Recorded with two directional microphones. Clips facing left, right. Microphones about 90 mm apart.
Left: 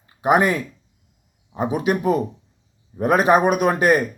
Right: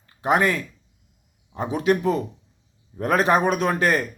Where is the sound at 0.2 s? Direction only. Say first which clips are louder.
Left 3 dB; 15° left (ahead or behind).